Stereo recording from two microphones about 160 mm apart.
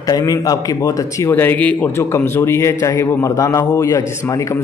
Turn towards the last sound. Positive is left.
turn(degrees=20)  # may be behind; listen again after turning